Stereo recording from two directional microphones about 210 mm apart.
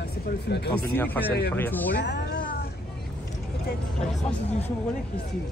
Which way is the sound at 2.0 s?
55° left (ahead or behind).